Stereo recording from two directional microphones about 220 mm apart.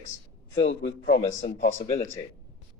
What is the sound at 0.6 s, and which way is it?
Speech, 55° left (ahead or behind).